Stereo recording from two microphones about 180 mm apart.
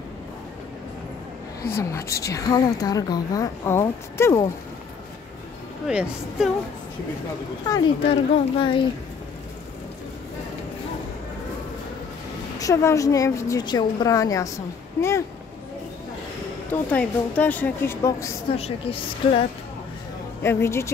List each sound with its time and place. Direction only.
1.6 s a woman's voice: 15° left (ahead or behind)
5.9 s a woman's voice: 5° right (ahead or behind)
7.6 s a woman's voice: 20° left (ahead or behind)
12.5 s a woman's voice: 20° left (ahead or behind)
16.9 s a woman's voice: 10° left (ahead or behind)
18.6 s a woman's voice: 30° left (ahead or behind)
20.4 s a woman's voice: 15° left (ahead or behind)